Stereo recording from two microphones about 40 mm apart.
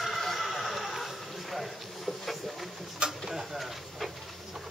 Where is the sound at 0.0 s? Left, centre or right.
Centre.